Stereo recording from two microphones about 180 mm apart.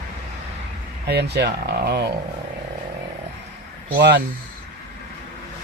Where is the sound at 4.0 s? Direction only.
65° right (ahead or behind).